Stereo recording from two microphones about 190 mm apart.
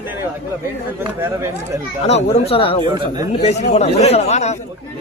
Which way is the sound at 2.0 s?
35° left (ahead or behind).